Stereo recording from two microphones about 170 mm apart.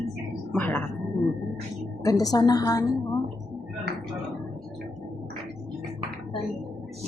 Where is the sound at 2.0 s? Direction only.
20° left (ahead or behind).